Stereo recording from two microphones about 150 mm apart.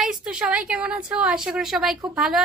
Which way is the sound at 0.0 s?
5° right (ahead or behind).